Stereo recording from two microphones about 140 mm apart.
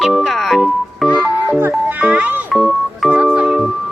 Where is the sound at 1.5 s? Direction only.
15° right (ahead or behind).